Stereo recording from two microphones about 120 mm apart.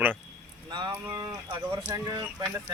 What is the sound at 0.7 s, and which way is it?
Speech, 35° right (ahead or behind).